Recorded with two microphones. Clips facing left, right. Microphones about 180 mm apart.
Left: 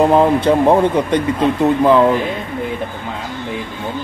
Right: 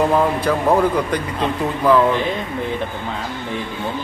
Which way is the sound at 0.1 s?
25° left (ahead or behind).